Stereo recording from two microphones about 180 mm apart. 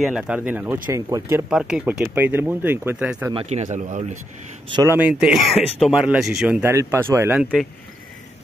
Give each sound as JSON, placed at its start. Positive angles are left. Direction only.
{"t": 0.0, "sound": "speech", "side_deg": -5}
{"t": 1.5, "sound": "speech", "side_deg": -5}
{"t": 3.3, "sound": "speech", "side_deg": -40}
{"t": 4.9, "sound": "speech", "side_deg": -5}